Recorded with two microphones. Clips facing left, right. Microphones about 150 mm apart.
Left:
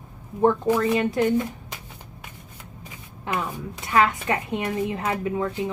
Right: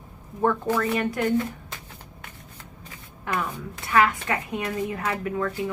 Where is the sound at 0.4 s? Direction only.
20° left (ahead or behind).